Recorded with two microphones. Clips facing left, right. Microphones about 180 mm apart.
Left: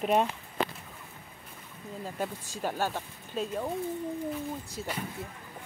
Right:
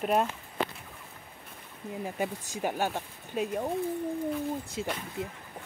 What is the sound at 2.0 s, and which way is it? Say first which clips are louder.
Speech: right 1 dB; 15° right (ahead or behind).